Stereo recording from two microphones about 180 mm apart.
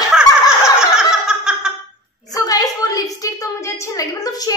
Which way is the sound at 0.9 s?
5° right (ahead or behind).